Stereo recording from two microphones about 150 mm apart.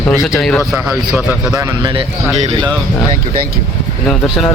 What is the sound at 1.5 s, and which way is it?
Speech, 30° right (ahead or behind).